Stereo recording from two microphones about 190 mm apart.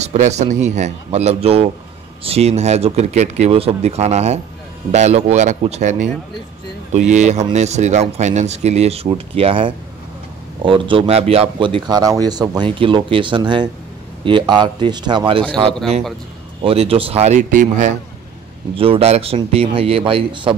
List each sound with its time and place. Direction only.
0.0 s speech: 35° right (ahead or behind)
16.6 s speech: 30° right (ahead or behind)
18.8 s speech: 30° right (ahead or behind)